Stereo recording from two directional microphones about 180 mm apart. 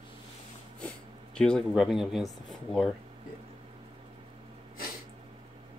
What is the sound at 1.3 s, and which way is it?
Speech, 5° left (ahead or behind).